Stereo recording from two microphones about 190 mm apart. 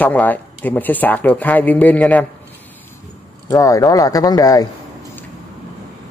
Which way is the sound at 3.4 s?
20° left (ahead or behind).